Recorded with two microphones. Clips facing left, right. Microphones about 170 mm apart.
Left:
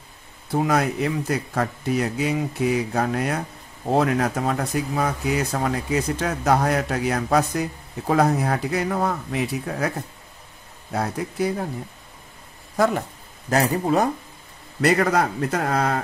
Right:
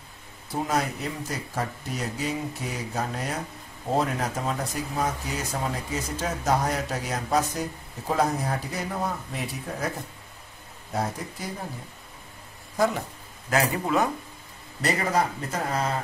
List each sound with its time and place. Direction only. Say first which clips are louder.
0.5 s speech: left 6 dB; 65° left (ahead or behind)
10.9 s speech: left 4 dB; 65° left (ahead or behind)
12.7 s speech: left 4 dB; 60° left (ahead or behind)
13.5 s speech: left 4 dB; 40° left (ahead or behind)
14.8 s speech: left 6 dB; 70° left (ahead or behind)